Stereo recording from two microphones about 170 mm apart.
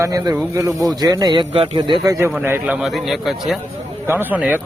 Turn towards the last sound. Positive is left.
turn(degrees=-10)  # may be behind; listen again after turning